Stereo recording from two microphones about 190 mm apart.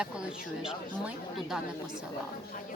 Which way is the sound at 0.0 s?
5° right (ahead or behind).